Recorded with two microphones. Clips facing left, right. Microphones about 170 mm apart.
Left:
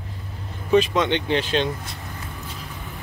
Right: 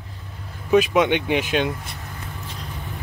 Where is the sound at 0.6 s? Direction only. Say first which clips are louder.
Right 2 dB; 10° right (ahead or behind).